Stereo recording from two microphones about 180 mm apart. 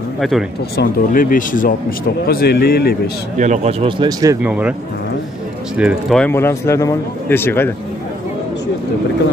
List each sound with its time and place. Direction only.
0.2 s speech: centre (ahead or behind)
0.7 s speech: 55° left (ahead or behind)
3.3 s speech: 40° right (ahead or behind); by 4.4 s 25° right (ahead or behind)
4.4 s speech: 5° right (ahead or behind)
5.8 s speech: 5° right (ahead or behind)
6.1 s a man's voice: 10° left (ahead or behind)